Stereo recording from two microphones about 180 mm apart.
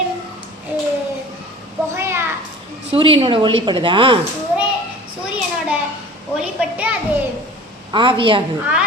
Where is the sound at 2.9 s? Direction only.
30° right (ahead or behind).